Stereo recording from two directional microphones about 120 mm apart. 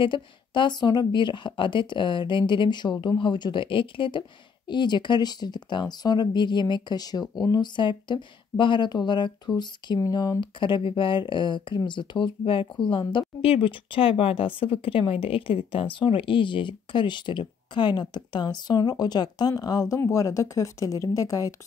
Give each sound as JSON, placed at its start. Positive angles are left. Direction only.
{"t": 0.0, "sound": "speech", "side_deg": 40}